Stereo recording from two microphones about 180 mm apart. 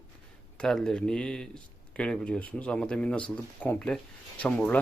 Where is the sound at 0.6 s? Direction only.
5° left (ahead or behind).